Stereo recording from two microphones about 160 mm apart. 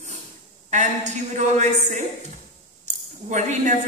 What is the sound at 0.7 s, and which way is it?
Speech, 45° right (ahead or behind).